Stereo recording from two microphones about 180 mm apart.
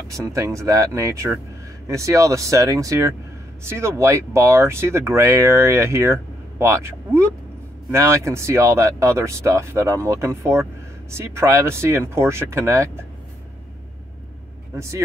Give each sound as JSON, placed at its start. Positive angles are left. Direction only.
{"t": 0.1, "sound": "speech", "side_deg": -15}